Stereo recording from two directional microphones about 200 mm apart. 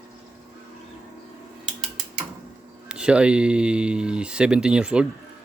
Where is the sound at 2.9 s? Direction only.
5° right (ahead or behind).